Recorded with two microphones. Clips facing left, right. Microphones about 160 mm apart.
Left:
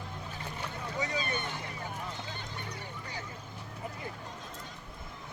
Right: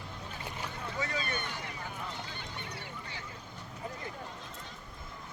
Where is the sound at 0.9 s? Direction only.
20° left (ahead or behind).